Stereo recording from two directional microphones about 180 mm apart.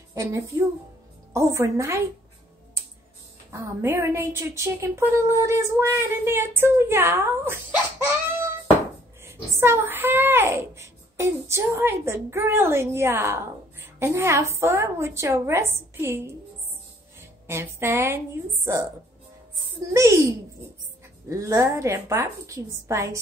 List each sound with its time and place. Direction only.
0.1 s a child's voice: 15° right (ahead or behind)
3.5 s a child's voice: 15° right (ahead or behind)
9.2 s a child's voice: 15° right (ahead or behind)
17.5 s a child's voice: 15° right (ahead or behind)
19.9 s a child's voice: 15° right (ahead or behind)